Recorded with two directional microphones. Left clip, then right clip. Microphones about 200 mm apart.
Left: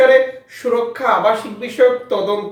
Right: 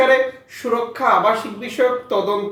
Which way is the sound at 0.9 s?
10° left (ahead or behind).